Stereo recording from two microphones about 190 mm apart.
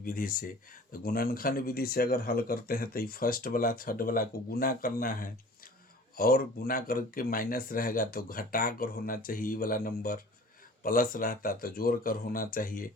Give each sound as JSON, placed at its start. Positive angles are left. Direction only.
{"t": 0.0, "sound": "speech", "side_deg": 50}